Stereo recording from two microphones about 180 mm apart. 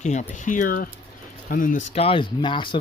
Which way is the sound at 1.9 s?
30° left (ahead or behind).